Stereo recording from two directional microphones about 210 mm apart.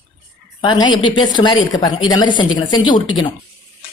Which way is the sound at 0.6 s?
20° left (ahead or behind).